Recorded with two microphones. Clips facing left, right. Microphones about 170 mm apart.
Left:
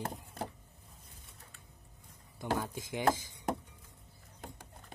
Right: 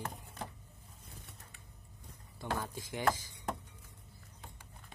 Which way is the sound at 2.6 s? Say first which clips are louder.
Left 3 dB; 20° left (ahead or behind).